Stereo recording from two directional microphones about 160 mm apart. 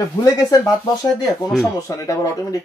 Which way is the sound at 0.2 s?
25° left (ahead or behind).